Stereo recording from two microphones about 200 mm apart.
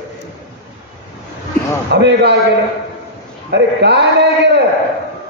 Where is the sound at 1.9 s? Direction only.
55° right (ahead or behind).